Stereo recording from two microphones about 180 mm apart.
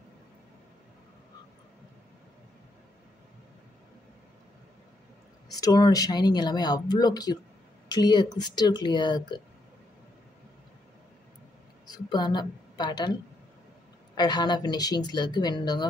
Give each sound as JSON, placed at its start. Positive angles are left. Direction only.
{"t": 5.5, "sound": "speech", "side_deg": 20}
{"t": 11.9, "sound": "a woman's voice", "side_deg": 25}